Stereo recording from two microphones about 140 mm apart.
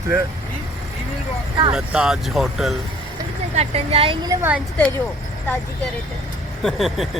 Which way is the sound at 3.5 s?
45° right (ahead or behind).